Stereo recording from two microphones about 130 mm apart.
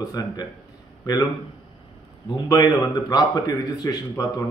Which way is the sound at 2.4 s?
30° left (ahead or behind).